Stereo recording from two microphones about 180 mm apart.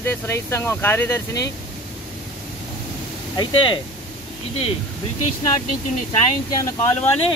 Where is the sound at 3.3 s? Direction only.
20° left (ahead or behind).